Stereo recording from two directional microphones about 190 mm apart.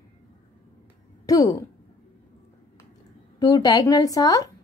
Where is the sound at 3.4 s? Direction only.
20° left (ahead or behind).